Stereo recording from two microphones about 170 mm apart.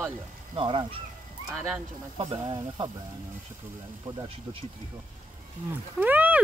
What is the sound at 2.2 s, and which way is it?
Speech, 30° right (ahead or behind).